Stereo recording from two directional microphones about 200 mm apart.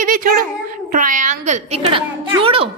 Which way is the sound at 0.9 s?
40° right (ahead or behind).